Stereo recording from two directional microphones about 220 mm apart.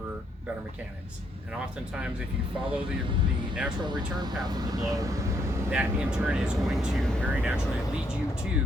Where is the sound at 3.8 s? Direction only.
20° right (ahead or behind).